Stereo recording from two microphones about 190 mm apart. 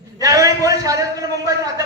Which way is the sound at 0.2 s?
15° right (ahead or behind).